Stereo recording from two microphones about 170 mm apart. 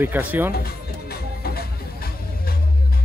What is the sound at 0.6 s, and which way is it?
Music, 65° left (ahead or behind).